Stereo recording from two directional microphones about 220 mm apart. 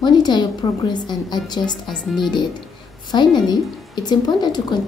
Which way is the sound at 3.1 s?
20° left (ahead or behind).